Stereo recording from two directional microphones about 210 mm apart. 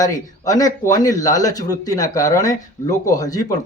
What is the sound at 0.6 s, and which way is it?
Speech, 15° left (ahead or behind).